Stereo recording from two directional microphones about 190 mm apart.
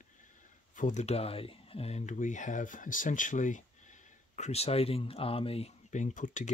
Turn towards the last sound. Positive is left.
turn(degrees=40)  # may be behind; listen again after turning